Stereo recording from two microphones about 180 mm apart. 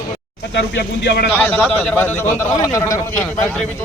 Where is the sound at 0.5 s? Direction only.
70° left (ahead or behind).